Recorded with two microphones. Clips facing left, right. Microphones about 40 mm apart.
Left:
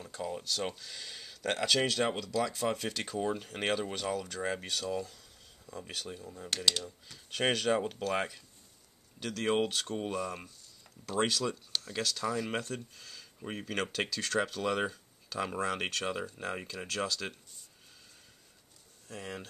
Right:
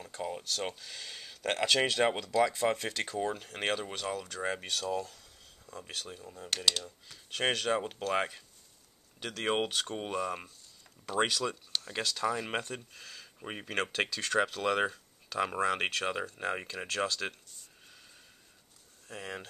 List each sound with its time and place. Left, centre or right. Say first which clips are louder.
0.2 s speech: even; centre
2.5 s speech: right 2 dB; centre
19.0 s speech: right 1 dB; centre